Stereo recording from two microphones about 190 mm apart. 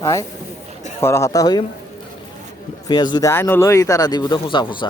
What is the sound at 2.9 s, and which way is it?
Speech, 20° left (ahead or behind).